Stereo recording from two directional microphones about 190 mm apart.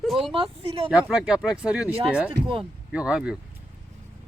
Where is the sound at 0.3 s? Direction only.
30° right (ahead or behind).